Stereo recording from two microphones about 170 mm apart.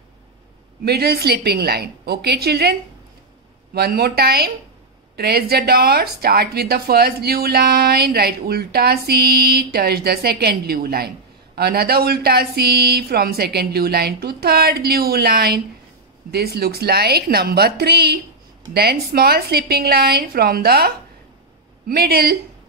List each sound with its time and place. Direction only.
0.8 s a woman's voice: 70° right (ahead or behind)
3.7 s a woman's voice: 70° right (ahead or behind)